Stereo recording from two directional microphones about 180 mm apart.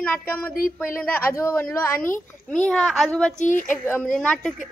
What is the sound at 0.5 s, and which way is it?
Speech, 50° left (ahead or behind).